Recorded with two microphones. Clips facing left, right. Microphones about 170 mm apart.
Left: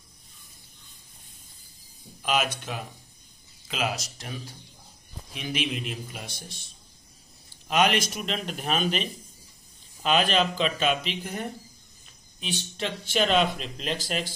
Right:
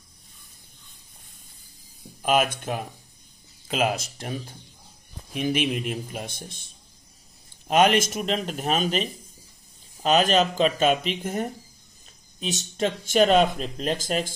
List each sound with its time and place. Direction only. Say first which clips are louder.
2.2 s speech: right 5 dB; 50° right (ahead or behind)
7.6 s speech: right 4 dB; 45° right (ahead or behind)